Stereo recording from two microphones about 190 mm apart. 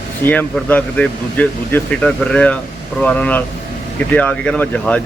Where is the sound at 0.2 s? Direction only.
10° left (ahead or behind).